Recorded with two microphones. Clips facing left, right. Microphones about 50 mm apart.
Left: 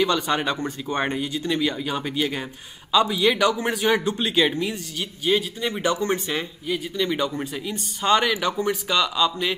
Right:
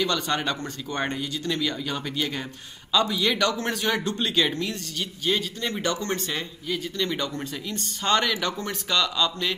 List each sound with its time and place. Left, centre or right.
0.0 s speech: centre